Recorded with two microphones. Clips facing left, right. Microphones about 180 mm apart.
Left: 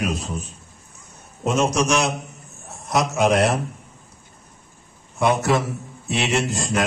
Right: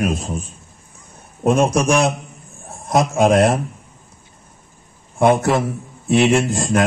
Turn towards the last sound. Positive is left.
turn(degrees=-50)  # may be behind; listen again after turning